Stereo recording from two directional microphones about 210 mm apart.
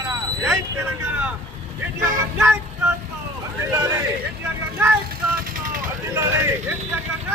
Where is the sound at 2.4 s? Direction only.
10° right (ahead or behind).